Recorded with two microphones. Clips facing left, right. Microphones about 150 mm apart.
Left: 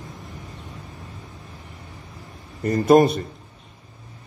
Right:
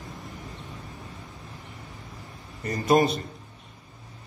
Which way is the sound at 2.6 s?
55° left (ahead or behind).